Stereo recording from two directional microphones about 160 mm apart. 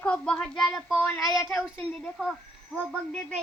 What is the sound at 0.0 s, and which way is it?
Child singing, 5° left (ahead or behind).